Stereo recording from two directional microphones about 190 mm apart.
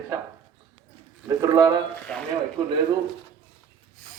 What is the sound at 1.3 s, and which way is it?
Speech, 20° right (ahead or behind).